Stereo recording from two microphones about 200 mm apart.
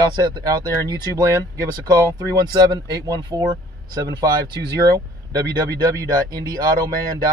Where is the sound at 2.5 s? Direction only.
20° right (ahead or behind).